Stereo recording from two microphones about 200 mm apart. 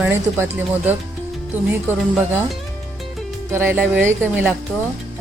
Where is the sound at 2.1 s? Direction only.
5° right (ahead or behind).